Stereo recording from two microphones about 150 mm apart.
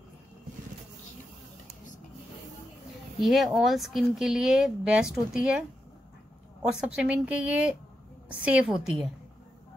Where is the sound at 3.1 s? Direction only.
Centre (ahead or behind).